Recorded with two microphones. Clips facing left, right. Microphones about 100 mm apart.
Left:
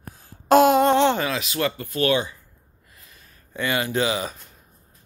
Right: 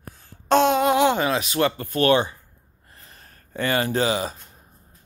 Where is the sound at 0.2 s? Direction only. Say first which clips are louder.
Left 3 dB; 5° left (ahead or behind).